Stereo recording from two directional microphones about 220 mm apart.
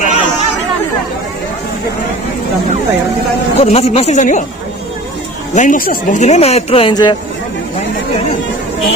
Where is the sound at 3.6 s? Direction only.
30° left (ahead or behind).